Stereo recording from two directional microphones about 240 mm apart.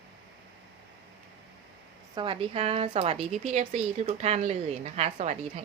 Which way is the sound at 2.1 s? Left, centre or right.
Right.